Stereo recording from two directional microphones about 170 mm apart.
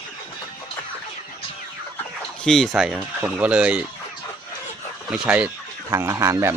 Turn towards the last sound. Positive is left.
turn(degrees=-15)  # may be behind; listen again after turning